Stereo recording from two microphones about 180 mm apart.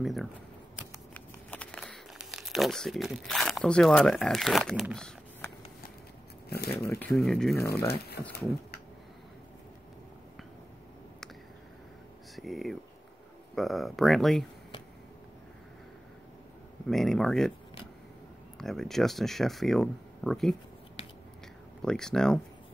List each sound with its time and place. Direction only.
0.0 s speech: centre (ahead or behind)
1.1 s crumpling: 5° left (ahead or behind)
6.7 s speech: 15° left (ahead or behind)
7.1 s speech: centre (ahead or behind)
7.5 s speech: 15° left (ahead or behind)
8.2 s speech: 70° left (ahead or behind)
12.4 s speech: centre (ahead or behind)
16.9 s speech: centre (ahead or behind)
18.6 s speech: centre (ahead or behind)
21.8 s speech: 5° left (ahead or behind)